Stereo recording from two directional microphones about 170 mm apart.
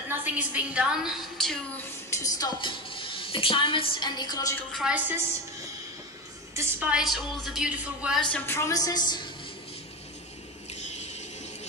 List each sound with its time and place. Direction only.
0.1 s a woman's voice: 10° right (ahead or behind)
1.8 s speech: 15° left (ahead or behind)
4.7 s a woman's voice: 5° right (ahead or behind)
6.5 s a woman's voice: 10° right (ahead or behind)
8.3 s a woman's voice: 15° left (ahead or behind)
10.7 s a sound: 40° left (ahead or behind)